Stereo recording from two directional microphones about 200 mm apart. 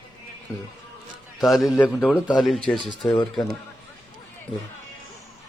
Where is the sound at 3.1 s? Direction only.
25° left (ahead or behind).